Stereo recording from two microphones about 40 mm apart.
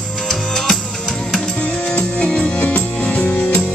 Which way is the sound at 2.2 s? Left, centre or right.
Left.